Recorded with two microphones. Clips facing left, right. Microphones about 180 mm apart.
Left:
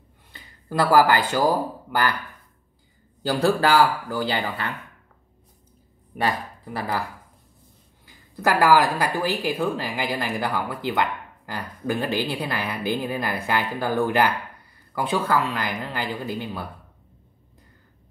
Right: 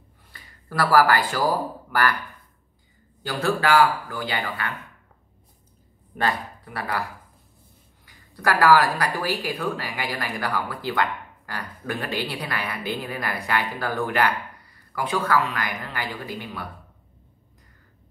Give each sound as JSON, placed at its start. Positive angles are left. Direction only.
{"t": 0.3, "sound": "speech", "side_deg": 20}
{"t": 3.2, "sound": "a man's voice", "side_deg": 35}
{"t": 6.1, "sound": "speech", "side_deg": 15}
{"t": 8.0, "sound": "speech", "side_deg": 20}